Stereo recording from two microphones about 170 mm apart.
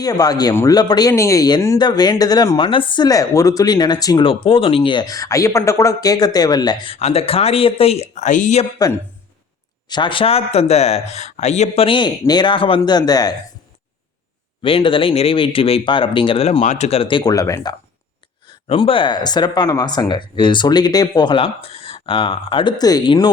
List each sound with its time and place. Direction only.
0.0 s speech: 20° left (ahead or behind); by 8.6 s 45° left (ahead or behind)
9.9 s speech: 30° left (ahead or behind)
14.6 s speech: 30° left (ahead or behind)
18.7 s speech: 30° left (ahead or behind)